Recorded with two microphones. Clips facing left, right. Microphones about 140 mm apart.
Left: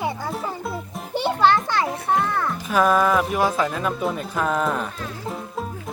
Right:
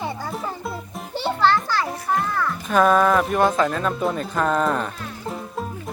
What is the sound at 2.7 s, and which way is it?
Speech, 5° left (ahead or behind).